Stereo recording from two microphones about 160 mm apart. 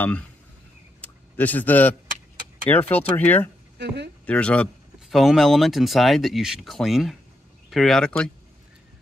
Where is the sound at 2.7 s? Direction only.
10° left (ahead or behind).